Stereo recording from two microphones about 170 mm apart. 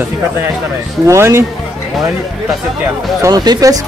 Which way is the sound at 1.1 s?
15° right (ahead or behind).